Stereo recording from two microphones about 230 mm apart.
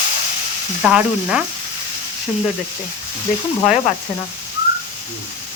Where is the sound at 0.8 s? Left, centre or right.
Centre.